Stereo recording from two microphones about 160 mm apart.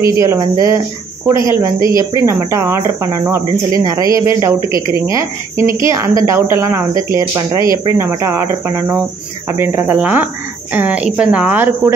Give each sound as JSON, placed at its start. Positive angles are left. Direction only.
{"t": 0.0, "sound": "speech", "side_deg": -20}